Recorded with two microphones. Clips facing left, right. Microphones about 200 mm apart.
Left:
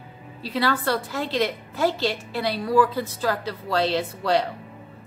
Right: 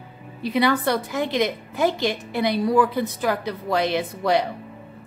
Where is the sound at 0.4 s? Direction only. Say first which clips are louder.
Right 4 dB; 15° right (ahead or behind).